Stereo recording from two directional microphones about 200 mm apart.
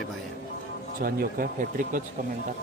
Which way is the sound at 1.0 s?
45° right (ahead or behind).